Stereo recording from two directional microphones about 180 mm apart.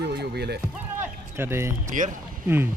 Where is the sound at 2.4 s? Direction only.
10° right (ahead or behind).